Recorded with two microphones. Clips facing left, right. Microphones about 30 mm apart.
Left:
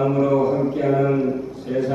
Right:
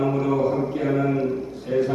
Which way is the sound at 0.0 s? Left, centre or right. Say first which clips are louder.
Left 3 dB; centre.